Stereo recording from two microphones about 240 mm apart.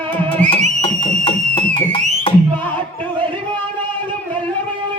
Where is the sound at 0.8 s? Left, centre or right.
Left.